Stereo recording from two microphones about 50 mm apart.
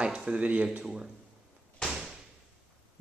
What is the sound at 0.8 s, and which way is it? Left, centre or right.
Speech, centre.